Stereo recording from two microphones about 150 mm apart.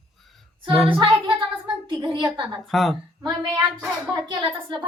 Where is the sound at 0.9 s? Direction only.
35° right (ahead or behind).